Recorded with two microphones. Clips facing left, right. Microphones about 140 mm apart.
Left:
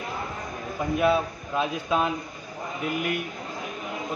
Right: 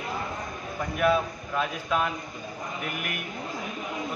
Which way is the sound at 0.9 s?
25° left (ahead or behind).